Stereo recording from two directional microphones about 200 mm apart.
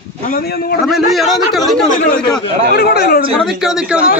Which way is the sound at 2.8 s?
50° left (ahead or behind).